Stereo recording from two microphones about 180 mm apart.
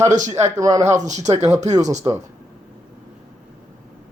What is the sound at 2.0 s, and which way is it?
Speech, 20° right (ahead or behind).